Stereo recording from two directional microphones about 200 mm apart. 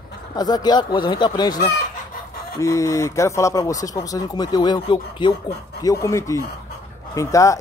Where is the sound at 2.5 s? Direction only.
15° left (ahead or behind).